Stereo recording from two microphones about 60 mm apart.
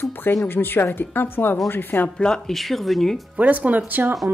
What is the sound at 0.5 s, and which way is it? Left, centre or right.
A woman's voice, left.